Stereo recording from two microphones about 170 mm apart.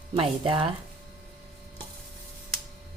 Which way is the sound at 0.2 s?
30° right (ahead or behind).